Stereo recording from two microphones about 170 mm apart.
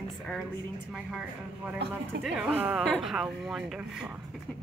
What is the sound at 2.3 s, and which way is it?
A woman's voice, 5° right (ahead or behind).